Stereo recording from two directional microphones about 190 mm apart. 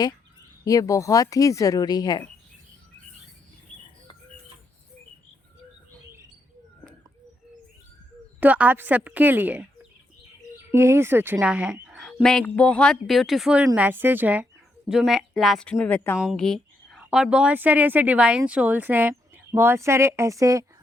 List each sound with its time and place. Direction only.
0.6 s speech: 20° left (ahead or behind)
8.4 s speech: 10° right (ahead or behind)
10.7 s a woman's voice: 15° right (ahead or behind); by 16.1 s 10° left (ahead or behind)
16.1 s speech: 5° right (ahead or behind)